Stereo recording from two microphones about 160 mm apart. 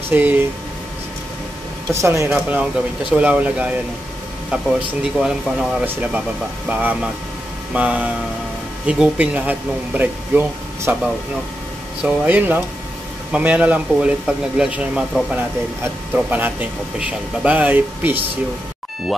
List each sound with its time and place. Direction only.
0.1 s speech: 10° right (ahead or behind)
1.9 s speech: 20° right (ahead or behind)
12.0 s speech: 10° right (ahead or behind)